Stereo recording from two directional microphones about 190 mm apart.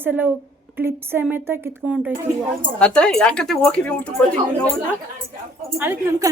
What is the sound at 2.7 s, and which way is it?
Speech, 5° left (ahead or behind).